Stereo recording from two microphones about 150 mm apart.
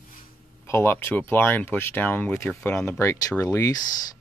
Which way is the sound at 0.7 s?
15° left (ahead or behind).